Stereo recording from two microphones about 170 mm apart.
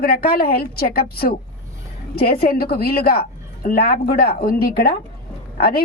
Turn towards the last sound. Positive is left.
turn(degrees=60)  # may be behind; listen again after turning